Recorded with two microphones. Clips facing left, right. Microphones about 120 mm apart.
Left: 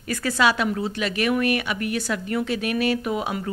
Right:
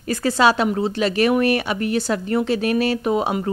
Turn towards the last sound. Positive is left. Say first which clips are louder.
# right 4 dB
turn(degrees=-30)  # may be behind; listen again after turning